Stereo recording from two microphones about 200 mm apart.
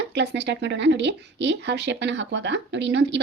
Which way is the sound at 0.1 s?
60° right (ahead or behind).